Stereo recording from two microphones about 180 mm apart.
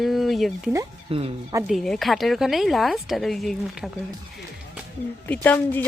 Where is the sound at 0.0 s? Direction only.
Centre (ahead or behind).